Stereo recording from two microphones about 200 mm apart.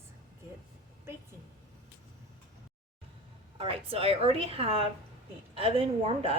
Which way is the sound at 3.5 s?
30° right (ahead or behind).